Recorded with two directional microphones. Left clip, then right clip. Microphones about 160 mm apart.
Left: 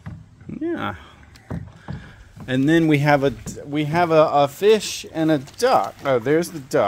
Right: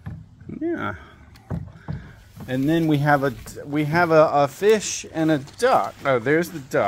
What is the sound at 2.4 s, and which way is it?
Speech, 55° left (ahead or behind).